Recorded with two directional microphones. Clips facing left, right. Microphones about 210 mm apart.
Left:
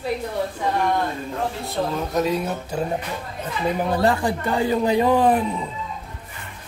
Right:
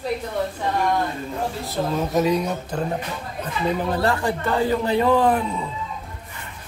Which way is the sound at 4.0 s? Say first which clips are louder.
Left 2 dB; 15° left (ahead or behind).